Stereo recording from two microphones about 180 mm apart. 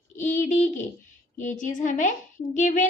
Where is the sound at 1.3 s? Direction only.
45° left (ahead or behind).